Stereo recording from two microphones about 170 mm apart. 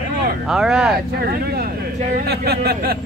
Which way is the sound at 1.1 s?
65° right (ahead or behind).